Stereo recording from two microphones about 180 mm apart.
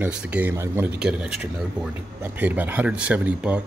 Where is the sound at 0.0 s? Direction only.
5° right (ahead or behind).